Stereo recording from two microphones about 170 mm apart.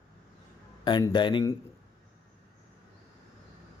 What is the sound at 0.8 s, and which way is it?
Speech, 25° left (ahead or behind).